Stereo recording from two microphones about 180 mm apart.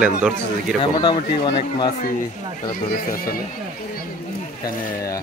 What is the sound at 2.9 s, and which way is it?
Speech, 55° left (ahead or behind).